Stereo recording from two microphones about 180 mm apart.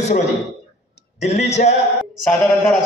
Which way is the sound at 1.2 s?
40° left (ahead or behind).